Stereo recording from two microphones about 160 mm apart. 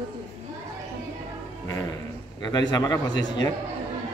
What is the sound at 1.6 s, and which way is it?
Dog, 20° left (ahead or behind).